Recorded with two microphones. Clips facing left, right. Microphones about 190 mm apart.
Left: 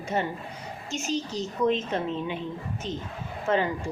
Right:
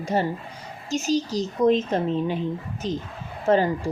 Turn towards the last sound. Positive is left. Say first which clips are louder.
# right 5 dB
turn(degrees=-40)  # may be behind; listen again after turning